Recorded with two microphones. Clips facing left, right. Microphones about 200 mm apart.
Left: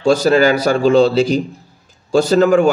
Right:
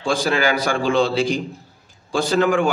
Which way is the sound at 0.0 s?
40° left (ahead or behind).